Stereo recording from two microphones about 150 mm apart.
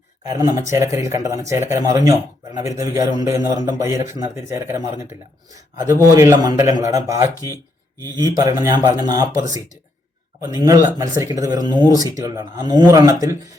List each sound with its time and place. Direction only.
0.3 s a man's voice: 20° right (ahead or behind)
7.5 s a sound: 15° left (ahead or behind)
8.4 s a man's voice: 20° right (ahead or behind)
10.5 s a man's voice: 20° right (ahead or behind)